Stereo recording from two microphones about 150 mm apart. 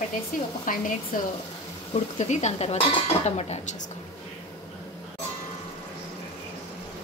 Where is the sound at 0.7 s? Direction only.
65° left (ahead or behind).